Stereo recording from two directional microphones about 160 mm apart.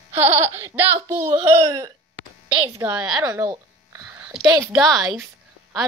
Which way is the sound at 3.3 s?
15° right (ahead or behind).